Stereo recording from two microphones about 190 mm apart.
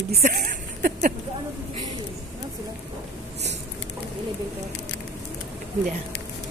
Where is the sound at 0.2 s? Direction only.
45° right (ahead or behind).